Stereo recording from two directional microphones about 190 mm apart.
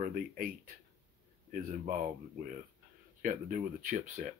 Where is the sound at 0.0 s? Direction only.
45° right (ahead or behind).